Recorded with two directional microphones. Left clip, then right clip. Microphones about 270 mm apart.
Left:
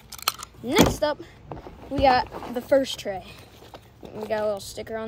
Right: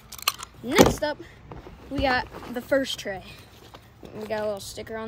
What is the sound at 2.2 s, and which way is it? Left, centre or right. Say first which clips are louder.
Speech: left 4 dB; centre.